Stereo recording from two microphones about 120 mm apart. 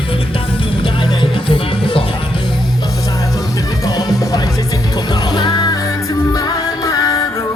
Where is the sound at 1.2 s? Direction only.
45° left (ahead or behind).